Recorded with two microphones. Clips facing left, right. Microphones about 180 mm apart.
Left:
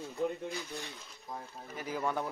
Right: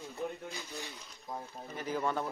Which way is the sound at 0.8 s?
Centre (ahead or behind).